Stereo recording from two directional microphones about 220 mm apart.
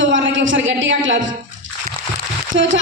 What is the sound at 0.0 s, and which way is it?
A man's voice, 60° right (ahead or behind).